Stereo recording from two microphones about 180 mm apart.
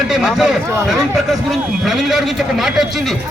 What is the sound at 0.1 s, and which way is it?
A man's voice, centre (ahead or behind).